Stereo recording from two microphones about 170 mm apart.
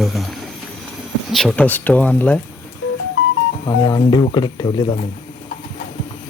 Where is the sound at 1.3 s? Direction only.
Centre (ahead or behind).